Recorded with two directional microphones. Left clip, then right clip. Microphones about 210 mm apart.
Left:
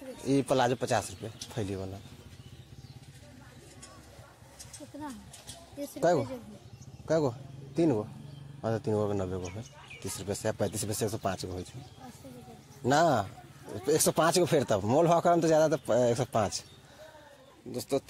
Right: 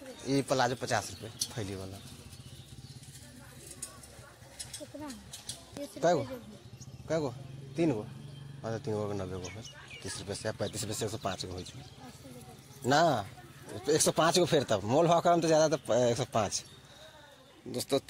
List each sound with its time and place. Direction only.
0.2 s speech: 30° left (ahead or behind)
5.9 s speech: 30° left (ahead or behind)
12.8 s speech: 25° left (ahead or behind)
17.6 s speech: centre (ahead or behind)